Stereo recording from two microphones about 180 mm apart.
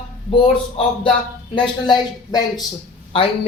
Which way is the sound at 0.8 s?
30° left (ahead or behind).